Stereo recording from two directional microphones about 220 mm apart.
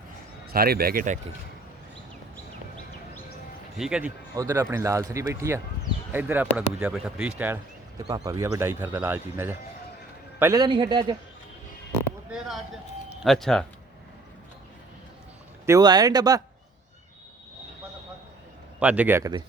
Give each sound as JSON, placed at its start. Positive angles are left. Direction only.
{"t": 0.5, "sound": "speech", "side_deg": -45}
{"t": 3.8, "sound": "a man's voice", "side_deg": -5}
{"t": 12.3, "sound": "a sound", "side_deg": 0}
{"t": 15.6, "sound": "speech", "side_deg": -15}
{"t": 18.8, "sound": "speech", "side_deg": -5}